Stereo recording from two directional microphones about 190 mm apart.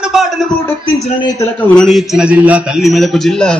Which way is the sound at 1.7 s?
Centre (ahead or behind).